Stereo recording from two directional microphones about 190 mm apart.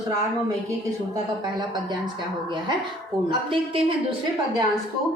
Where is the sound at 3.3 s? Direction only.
25° right (ahead or behind).